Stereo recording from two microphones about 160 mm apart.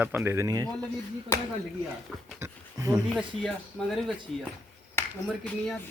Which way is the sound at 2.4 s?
20° right (ahead or behind).